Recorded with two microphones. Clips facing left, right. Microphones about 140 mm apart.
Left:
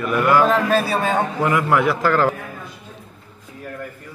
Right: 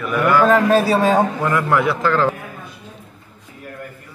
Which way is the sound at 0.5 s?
35° right (ahead or behind).